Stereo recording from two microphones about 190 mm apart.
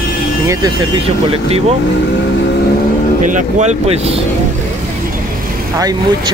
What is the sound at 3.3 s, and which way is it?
Speech, 40° right (ahead or behind).